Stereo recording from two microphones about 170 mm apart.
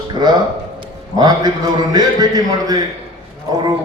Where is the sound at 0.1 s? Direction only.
25° right (ahead or behind).